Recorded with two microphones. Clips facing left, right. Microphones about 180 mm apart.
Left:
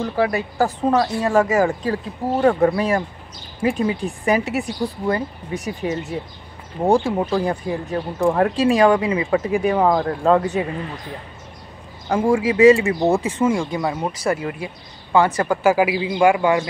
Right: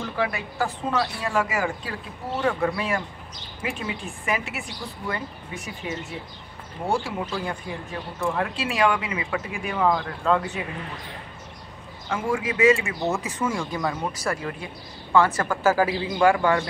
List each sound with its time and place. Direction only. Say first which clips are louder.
0.0 s a woman's voice: left 7 dB; 40° left (ahead or behind)
7.1 s a woman's voice: left 9 dB; 40° left (ahead or behind)
12.1 s speech: left 8 dB; 30° left (ahead or behind); by 16.6 s 15° left (ahead or behind)